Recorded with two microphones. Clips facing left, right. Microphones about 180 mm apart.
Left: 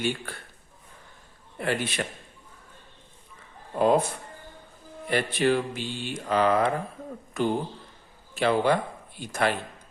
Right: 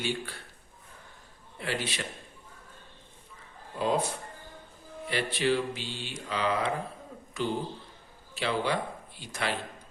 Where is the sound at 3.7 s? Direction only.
55° left (ahead or behind).